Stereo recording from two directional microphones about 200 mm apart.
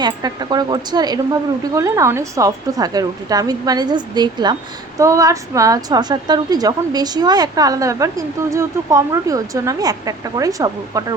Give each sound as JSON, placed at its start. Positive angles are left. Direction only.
{"t": 0.0, "sound": "a woman's voice", "side_deg": -20}